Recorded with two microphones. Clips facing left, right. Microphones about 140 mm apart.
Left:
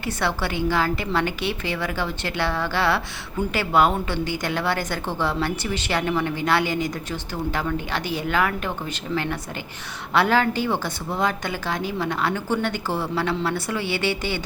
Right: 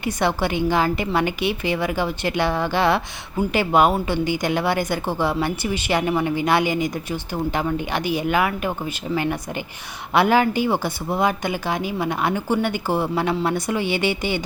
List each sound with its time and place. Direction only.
0.0 s a woman's voice: 15° right (ahead or behind)